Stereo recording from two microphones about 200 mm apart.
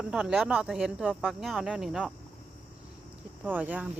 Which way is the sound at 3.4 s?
5° right (ahead or behind).